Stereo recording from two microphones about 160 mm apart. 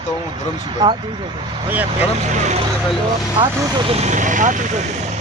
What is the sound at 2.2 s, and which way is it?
Speech, 50° right (ahead or behind).